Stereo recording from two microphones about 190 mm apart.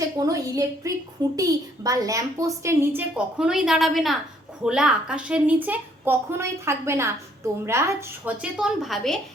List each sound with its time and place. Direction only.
0.2 s a woman's voice: 20° right (ahead or behind); by 9.1 s centre (ahead or behind)